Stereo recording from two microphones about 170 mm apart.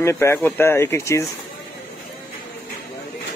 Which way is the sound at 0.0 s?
15° left (ahead or behind).